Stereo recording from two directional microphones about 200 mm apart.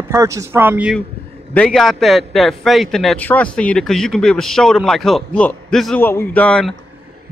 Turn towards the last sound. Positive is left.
turn(degrees=5)  # may be behind; listen again after turning